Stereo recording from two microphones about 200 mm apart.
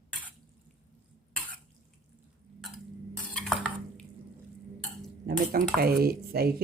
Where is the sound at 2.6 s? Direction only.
Centre (ahead or behind).